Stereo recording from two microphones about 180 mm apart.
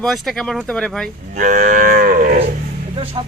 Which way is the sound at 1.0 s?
45° right (ahead or behind).